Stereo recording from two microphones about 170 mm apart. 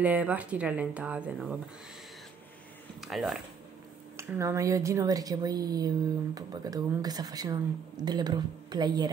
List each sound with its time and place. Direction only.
0.0 s speech: 10° right (ahead or behind)
3.0 s speech: centre (ahead or behind)
4.4 s speech: 20° right (ahead or behind)